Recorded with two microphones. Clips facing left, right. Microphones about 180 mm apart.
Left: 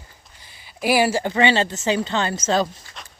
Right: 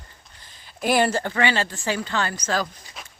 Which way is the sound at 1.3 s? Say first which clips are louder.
Left 4 dB; 20° left (ahead or behind).